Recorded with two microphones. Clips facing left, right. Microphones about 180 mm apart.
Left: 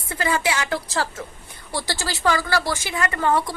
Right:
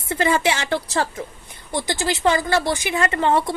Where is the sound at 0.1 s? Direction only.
25° right (ahead or behind).